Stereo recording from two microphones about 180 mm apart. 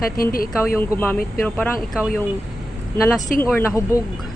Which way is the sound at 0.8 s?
10° left (ahead or behind).